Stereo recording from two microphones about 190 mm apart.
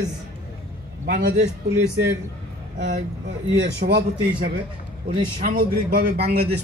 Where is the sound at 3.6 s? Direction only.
60° right (ahead or behind).